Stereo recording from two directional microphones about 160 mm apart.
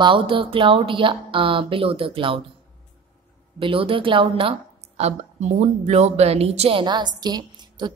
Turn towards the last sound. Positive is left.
turn(degrees=-25)  # may be behind; listen again after turning